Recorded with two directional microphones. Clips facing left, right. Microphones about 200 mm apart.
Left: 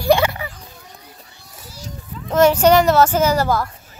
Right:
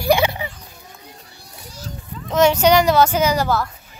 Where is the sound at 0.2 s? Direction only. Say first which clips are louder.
Even; 20° right (ahead or behind).